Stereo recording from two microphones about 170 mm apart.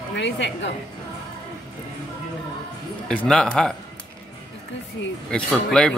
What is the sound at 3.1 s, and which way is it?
Speech, 5° left (ahead or behind).